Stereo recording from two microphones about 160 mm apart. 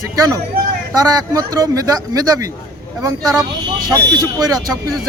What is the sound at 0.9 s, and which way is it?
A man's voice, 20° right (ahead or behind).